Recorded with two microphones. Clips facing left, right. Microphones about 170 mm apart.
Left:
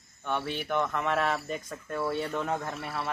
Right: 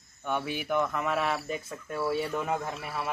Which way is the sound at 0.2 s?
10° right (ahead or behind).